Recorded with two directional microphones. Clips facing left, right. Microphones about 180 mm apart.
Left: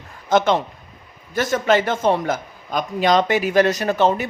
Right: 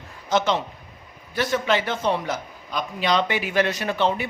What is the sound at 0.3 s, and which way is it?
A man's voice, 50° left (ahead or behind).